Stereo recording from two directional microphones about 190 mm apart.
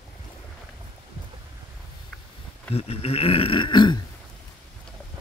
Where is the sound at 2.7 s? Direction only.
30° left (ahead or behind).